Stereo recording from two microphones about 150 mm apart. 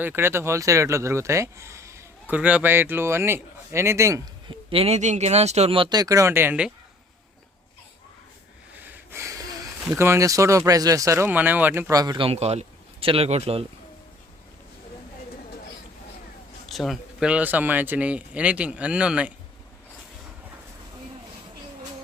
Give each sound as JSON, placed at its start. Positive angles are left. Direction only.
{"t": 0.0, "sound": "speech", "side_deg": -15}
{"t": 4.4, "sound": "speech", "side_deg": -40}
{"t": 8.8, "sound": "sniff", "side_deg": -15}
{"t": 9.9, "sound": "speech", "side_deg": -15}
{"t": 16.6, "sound": "speech", "side_deg": 0}